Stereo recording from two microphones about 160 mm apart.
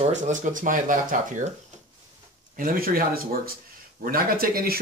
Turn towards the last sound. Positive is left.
turn(degrees=-65)  # may be behind; listen again after turning